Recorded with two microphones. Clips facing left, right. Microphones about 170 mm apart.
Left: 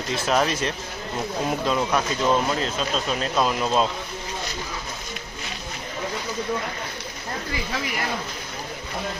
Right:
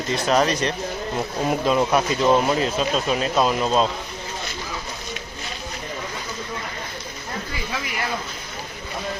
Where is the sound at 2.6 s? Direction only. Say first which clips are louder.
Right 4 dB; 10° right (ahead or behind).